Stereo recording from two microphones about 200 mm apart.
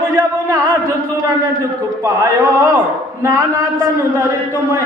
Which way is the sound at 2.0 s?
15° right (ahead or behind).